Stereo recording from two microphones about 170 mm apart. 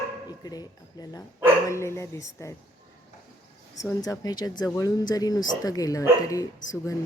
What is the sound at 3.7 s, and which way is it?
Speech, 20° left (ahead or behind).